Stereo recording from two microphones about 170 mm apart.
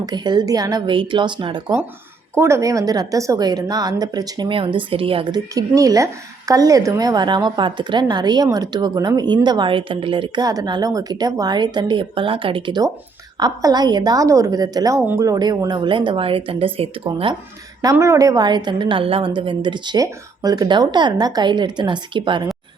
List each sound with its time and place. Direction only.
0.0 s a woman's voice: 25° right (ahead or behind)
2.3 s a woman's voice: 15° right (ahead or behind); by 17.3 s 30° right (ahead or behind)
17.8 s a woman's voice: 15° right (ahead or behind)